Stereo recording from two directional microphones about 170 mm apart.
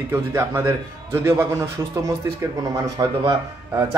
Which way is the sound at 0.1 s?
15° right (ahead or behind).